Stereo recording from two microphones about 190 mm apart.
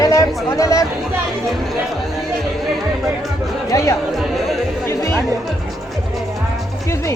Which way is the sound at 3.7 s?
15° left (ahead or behind).